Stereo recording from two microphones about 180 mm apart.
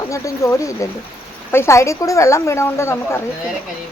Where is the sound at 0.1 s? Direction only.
15° left (ahead or behind).